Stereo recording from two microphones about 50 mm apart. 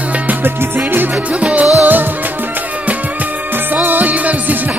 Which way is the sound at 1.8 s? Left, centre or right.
Right.